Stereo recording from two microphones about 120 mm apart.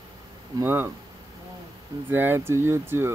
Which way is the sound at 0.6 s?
20° right (ahead or behind).